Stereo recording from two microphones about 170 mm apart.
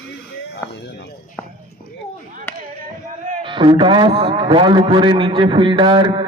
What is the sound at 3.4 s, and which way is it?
A man's voice, 30° right (ahead or behind).